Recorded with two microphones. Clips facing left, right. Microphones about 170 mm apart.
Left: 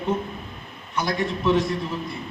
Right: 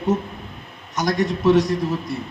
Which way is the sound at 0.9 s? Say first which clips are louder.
Right 4 dB; 40° right (ahead or behind).